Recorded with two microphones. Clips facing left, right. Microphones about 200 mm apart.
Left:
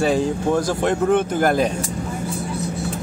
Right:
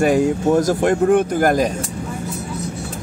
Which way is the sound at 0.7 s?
45° right (ahead or behind).